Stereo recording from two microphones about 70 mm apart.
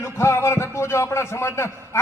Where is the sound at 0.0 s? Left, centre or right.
Left.